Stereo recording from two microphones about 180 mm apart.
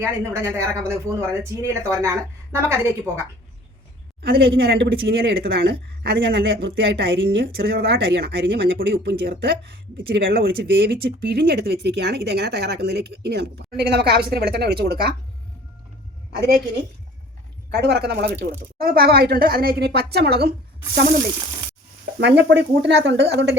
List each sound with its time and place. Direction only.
0.0 s speech: 15° right (ahead or behind)
4.2 s speech: 65° right (ahead or behind)
17.7 s speech: 65° right (ahead or behind)
22.2 s speech: 70° right (ahead or behind)